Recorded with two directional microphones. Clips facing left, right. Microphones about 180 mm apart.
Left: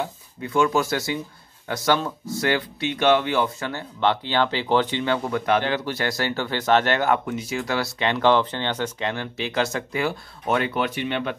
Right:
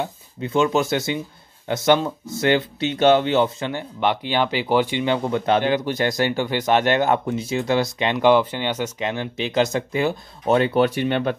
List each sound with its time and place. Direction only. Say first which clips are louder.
0.0 s speech: right 2 dB; 20° right (ahead or behind)
11.0 s speech: right 5 dB; 45° right (ahead or behind)